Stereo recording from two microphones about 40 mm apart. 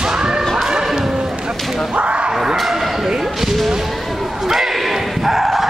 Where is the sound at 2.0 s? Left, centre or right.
Right.